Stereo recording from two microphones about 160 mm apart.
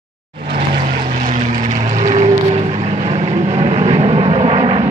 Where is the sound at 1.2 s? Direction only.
50° right (ahead or behind).